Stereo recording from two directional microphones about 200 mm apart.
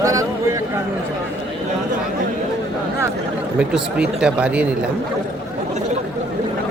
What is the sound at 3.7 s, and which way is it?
Speech, 5° right (ahead or behind).